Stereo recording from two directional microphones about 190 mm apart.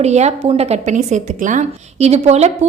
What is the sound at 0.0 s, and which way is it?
A woman's voice, 35° right (ahead or behind).